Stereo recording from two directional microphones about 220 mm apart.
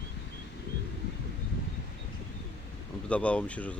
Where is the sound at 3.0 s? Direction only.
5° left (ahead or behind).